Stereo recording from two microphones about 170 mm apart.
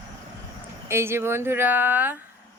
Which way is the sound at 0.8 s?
15° right (ahead or behind).